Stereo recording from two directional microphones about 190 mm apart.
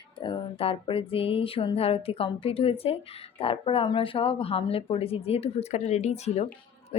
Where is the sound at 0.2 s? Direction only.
25° left (ahead or behind).